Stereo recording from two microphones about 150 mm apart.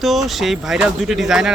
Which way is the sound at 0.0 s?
Centre (ahead or behind).